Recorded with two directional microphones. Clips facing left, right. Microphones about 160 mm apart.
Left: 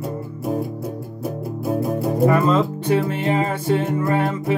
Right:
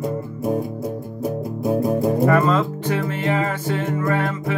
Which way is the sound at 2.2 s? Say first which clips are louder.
Left 4 dB; 25° left (ahead or behind).